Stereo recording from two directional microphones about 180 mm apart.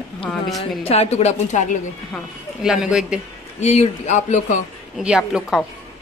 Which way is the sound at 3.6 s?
40° left (ahead or behind).